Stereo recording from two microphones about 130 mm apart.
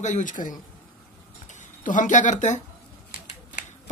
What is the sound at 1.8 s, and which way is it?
Speech, 75° left (ahead or behind).